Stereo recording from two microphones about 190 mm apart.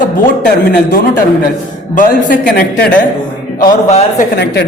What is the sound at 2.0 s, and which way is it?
Speech, 45° left (ahead or behind).